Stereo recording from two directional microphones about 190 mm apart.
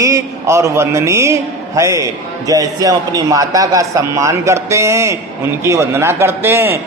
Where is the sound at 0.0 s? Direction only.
15° right (ahead or behind).